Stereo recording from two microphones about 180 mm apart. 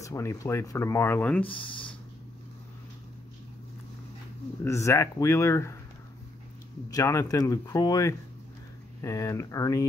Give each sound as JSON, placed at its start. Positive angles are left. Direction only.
{"t": 0.0, "sound": "speech", "side_deg": 15}
{"t": 1.4, "sound": "speech", "side_deg": 30}
{"t": 4.6, "sound": "speech", "side_deg": 15}
{"t": 6.9, "sound": "speech", "side_deg": 15}